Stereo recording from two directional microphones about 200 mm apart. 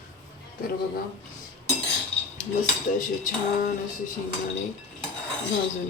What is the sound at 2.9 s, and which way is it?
Speech, 40° left (ahead or behind).